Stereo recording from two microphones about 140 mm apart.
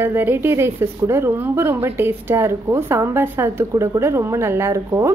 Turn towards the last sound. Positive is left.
turn(degrees=-20)  # may be behind; listen again after turning